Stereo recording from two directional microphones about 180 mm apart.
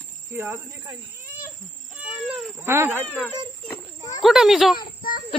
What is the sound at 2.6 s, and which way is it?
Speech, 15° right (ahead or behind).